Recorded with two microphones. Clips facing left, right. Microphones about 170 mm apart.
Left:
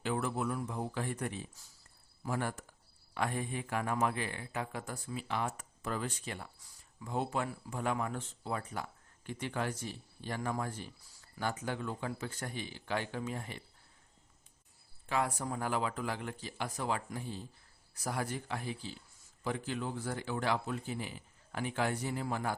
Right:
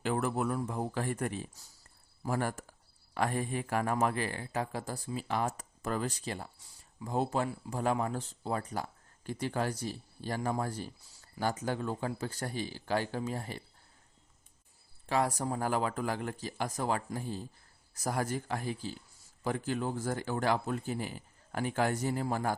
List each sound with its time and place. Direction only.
0.0 s speech: 45° right (ahead or behind)
15.0 s speech: 35° right (ahead or behind)